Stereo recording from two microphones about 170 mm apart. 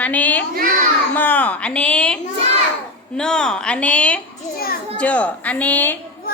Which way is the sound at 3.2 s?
5° left (ahead or behind).